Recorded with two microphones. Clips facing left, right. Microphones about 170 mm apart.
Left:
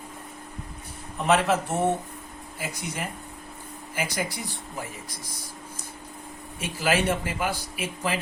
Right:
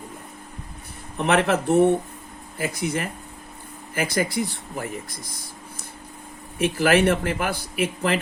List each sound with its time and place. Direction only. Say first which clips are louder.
1.2 s speech: right 2 dB; 60° right (ahead or behind)
6.6 s speech: right 7 dB; 60° right (ahead or behind)